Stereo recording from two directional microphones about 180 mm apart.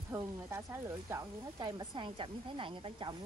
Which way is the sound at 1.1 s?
25° right (ahead or behind).